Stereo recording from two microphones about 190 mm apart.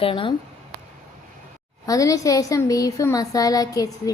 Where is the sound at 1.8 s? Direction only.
15° left (ahead or behind).